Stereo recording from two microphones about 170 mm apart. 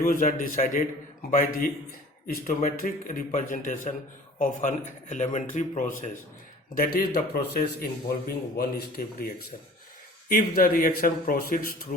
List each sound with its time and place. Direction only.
0.0 s a man's voice: 55° left (ahead or behind)
6.7 s speech: 65° left (ahead or behind)